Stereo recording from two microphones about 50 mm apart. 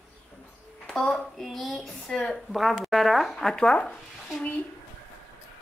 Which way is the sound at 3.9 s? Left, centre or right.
Centre.